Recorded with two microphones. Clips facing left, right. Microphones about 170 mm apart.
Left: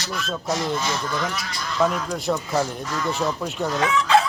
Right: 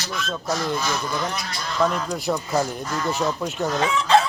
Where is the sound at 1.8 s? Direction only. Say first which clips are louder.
Even; centre (ahead or behind).